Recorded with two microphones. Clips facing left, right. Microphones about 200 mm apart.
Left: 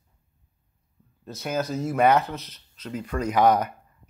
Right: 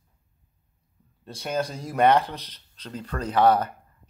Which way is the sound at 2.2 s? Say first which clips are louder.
Left 2 dB; 35° right (ahead or behind).